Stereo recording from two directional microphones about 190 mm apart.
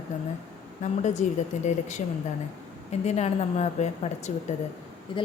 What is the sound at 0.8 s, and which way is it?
Speech, 40° left (ahead or behind).